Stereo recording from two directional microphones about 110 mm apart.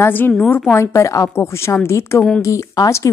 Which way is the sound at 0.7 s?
30° left (ahead or behind).